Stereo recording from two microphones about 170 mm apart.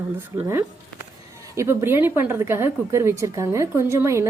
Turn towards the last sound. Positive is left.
turn(degrees=-15)  # may be behind; listen again after turning